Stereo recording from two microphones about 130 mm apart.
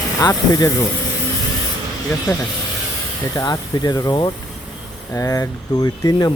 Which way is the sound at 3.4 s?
30° left (ahead or behind).